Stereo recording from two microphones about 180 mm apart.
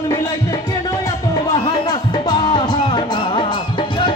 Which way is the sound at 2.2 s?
25° left (ahead or behind).